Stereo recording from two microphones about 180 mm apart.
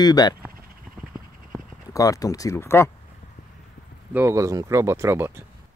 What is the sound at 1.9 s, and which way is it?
Speech, 20° left (ahead or behind).